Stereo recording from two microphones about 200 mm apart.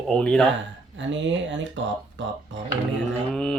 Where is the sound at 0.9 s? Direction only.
65° right (ahead or behind).